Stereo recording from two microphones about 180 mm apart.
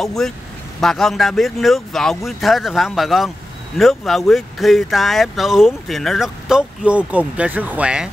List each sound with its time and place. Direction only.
0.0 s speech: centre (ahead or behind)